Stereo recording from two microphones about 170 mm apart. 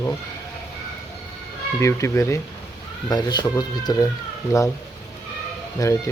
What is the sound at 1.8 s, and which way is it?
Speech, 15° left (ahead or behind).